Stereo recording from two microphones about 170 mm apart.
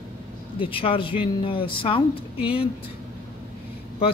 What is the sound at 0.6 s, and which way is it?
Speech, 30° left (ahead or behind).